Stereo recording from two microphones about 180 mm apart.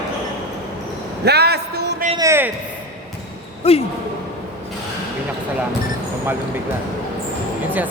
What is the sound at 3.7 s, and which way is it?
Speech, 35° left (ahead or behind).